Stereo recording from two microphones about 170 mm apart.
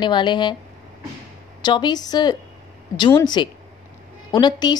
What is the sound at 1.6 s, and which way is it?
A woman's voice, 25° left (ahead or behind).